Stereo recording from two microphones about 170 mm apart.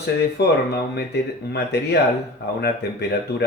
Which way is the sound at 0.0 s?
80° left.